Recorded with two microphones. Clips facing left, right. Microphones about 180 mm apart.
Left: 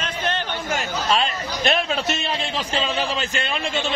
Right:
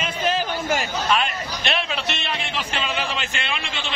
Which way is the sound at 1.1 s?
40° left (ahead or behind).